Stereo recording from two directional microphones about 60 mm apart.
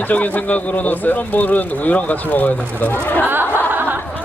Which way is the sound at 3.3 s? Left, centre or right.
Right.